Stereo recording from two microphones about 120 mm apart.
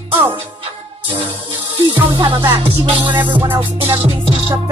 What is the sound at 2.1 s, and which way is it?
Music, 40° right (ahead or behind).